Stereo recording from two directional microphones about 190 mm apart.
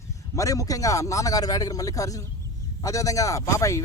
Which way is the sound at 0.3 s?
15° left (ahead or behind).